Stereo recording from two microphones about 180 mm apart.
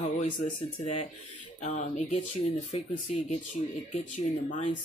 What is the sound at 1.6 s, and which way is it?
Speech, 40° left (ahead or behind).